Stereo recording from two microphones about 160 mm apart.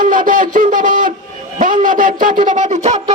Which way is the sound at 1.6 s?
55° right (ahead or behind).